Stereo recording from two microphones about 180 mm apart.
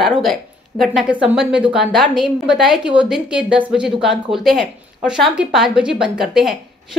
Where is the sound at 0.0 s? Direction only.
Centre (ahead or behind).